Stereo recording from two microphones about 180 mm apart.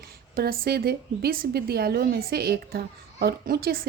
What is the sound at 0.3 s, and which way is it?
A woman's voice, 55° right (ahead or behind).